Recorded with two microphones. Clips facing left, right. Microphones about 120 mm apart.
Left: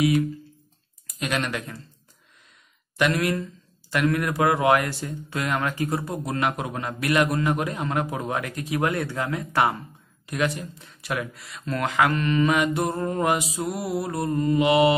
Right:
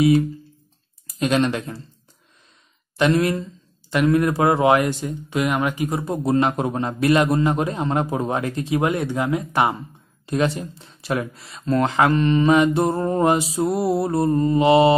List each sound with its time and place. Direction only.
1.0 s speech: 30° right (ahead or behind)
3.0 s speech: 25° right (ahead or behind)